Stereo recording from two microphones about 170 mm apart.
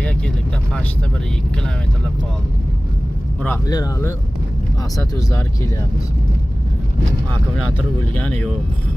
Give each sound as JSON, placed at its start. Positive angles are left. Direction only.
{"t": 3.4, "sound": "speech", "side_deg": 20}
{"t": 8.1, "sound": "speech", "side_deg": 5}